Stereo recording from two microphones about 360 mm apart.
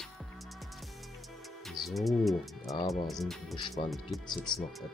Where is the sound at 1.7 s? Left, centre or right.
Centre.